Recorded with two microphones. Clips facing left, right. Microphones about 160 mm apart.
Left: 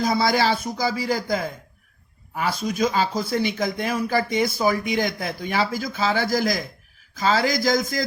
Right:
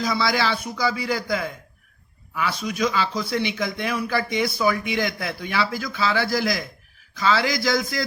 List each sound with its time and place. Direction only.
0.0 s speech: 50° left (ahead or behind)